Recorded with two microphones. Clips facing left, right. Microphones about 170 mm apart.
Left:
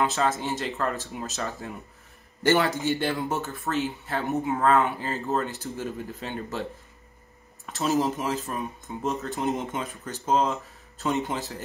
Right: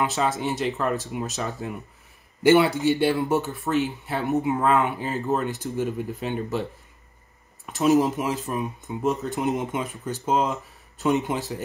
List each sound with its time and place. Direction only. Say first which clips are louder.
0.0 s speech: right 1 dB; 15° right (ahead or behind)
3.3 s speech: right 5 dB; 15° right (ahead or behind)
7.6 s speech: right 5 dB; 15° right (ahead or behind)